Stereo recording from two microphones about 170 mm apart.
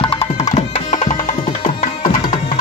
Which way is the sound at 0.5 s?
45° left (ahead or behind).